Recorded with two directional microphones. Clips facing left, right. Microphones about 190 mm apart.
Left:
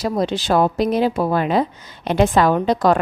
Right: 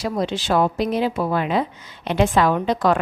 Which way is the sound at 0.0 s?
40° left (ahead or behind).